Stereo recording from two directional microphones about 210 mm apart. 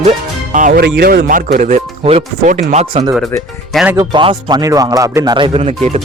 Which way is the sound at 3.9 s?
20° right (ahead or behind).